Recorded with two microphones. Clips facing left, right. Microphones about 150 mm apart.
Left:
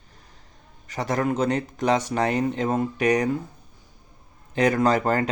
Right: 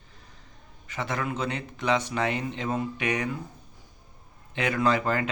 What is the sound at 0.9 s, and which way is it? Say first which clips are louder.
Speech: left 6 dB; 40° left (ahead or behind).